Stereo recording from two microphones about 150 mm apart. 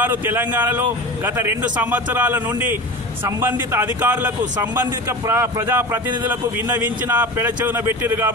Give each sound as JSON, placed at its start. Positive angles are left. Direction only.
{"t": 0.0, "sound": "speech", "side_deg": -15}